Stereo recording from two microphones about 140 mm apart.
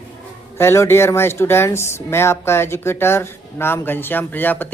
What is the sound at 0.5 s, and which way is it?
Speech, 20° left (ahead or behind).